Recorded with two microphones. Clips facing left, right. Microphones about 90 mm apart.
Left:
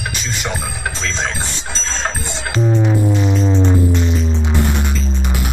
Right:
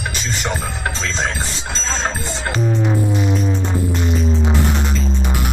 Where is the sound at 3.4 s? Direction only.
25° left (ahead or behind).